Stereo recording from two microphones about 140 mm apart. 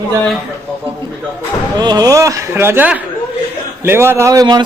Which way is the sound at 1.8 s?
30° right (ahead or behind).